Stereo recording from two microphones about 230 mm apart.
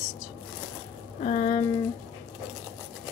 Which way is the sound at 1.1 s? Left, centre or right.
Left.